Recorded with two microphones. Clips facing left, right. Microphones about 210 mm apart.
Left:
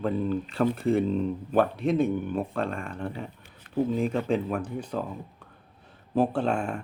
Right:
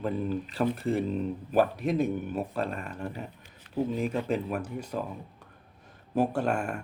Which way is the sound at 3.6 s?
50° left (ahead or behind).